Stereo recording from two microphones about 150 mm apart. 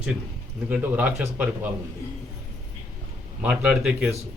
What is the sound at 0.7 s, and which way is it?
Speech, 10° right (ahead or behind).